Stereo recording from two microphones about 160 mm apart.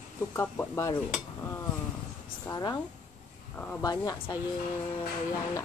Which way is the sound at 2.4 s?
25° left (ahead or behind).